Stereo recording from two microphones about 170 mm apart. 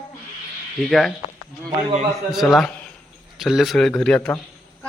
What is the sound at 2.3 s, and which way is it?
A man's voice, centre (ahead or behind).